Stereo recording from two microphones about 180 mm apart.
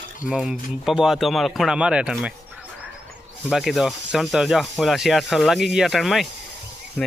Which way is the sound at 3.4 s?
Centre (ahead or behind).